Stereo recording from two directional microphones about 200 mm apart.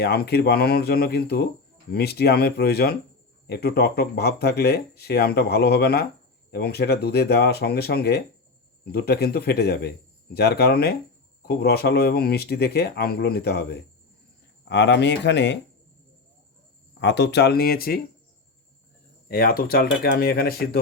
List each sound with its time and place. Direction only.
0.0 s speech: 50° left (ahead or behind)
17.0 s speech: 60° left (ahead or behind)
19.3 s speech: 45° left (ahead or behind)